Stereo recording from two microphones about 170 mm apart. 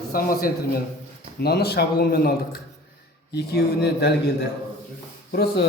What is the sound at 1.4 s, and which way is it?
Speech, 70° left (ahead or behind).